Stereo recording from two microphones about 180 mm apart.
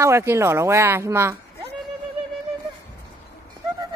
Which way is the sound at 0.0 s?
15° right (ahead or behind).